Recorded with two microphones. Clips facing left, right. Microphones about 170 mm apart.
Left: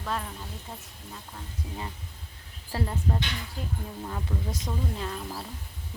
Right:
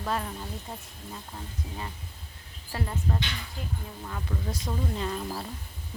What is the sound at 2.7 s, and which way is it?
Speech, 30° left (ahead or behind).